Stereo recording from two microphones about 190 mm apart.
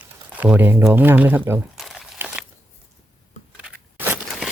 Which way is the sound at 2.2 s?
5° right (ahead or behind).